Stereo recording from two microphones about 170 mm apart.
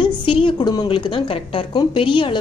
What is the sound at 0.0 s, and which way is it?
A woman's voice, 30° left (ahead or behind).